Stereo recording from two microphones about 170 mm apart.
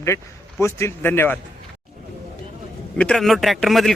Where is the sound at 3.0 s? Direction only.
5° left (ahead or behind).